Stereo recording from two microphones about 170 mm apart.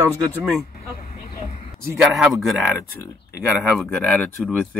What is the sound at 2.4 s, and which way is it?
Speech, centre (ahead or behind).